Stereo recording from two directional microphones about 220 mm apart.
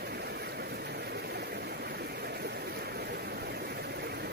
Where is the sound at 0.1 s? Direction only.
45° right (ahead or behind).